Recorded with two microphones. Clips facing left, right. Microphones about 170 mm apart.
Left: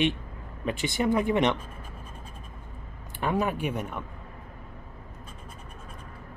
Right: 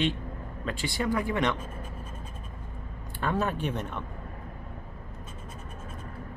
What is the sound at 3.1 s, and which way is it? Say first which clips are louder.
Speech: left 2 dB; 15° left (ahead or behind).